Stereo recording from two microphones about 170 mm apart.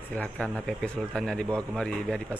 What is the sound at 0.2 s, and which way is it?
A man's voice, 5° left (ahead or behind).